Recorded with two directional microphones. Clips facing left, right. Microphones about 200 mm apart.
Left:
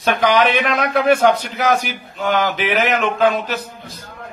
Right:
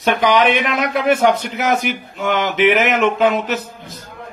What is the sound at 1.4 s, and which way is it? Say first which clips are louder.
A man's voice: even; 25° right (ahead or behind).